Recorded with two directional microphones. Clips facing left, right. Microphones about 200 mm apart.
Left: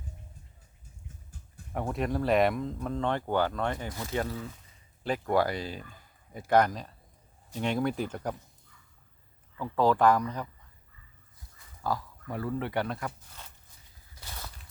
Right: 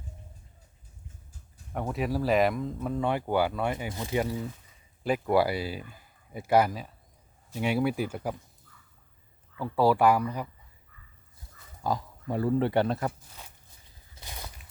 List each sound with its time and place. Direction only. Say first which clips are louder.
1.7 s speech: right 1 dB; centre (ahead or behind)
9.6 s speech: right 1 dB; 10° right (ahead or behind)
11.8 s speech: right 2 dB; 20° right (ahead or behind)
14.2 s a sound: right 1 dB; 15° right (ahead or behind)